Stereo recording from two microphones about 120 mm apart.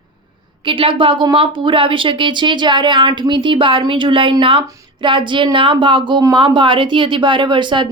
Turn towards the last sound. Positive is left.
turn(degrees=-40)  # may be behind; listen again after turning